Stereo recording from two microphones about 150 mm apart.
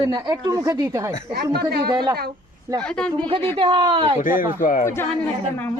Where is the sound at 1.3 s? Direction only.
90° right.